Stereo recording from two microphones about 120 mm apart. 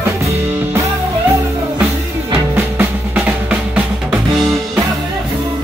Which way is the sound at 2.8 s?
15° right (ahead or behind).